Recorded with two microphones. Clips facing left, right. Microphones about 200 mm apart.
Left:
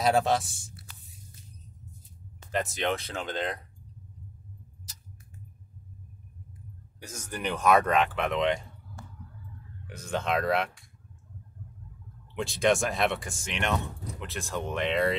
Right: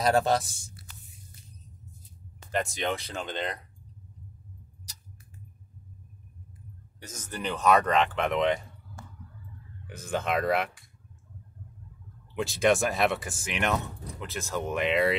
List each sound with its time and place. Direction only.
0.0 s speech: centre (ahead or behind)
2.5 s speech: centre (ahead or behind)
7.2 s speech: 10° left (ahead or behind)
9.8 s speech: 5° right (ahead or behind)
12.4 s speech: 5° right (ahead or behind)